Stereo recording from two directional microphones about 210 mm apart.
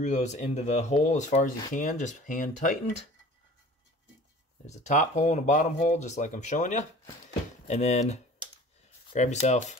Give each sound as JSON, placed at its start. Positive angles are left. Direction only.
{"t": 0.0, "sound": "speech", "side_deg": 30}
{"t": 4.6, "sound": "speech", "side_deg": 35}